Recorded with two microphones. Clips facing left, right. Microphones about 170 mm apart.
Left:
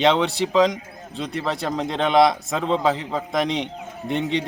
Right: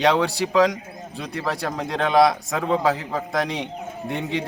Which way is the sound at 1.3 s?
20° left (ahead or behind).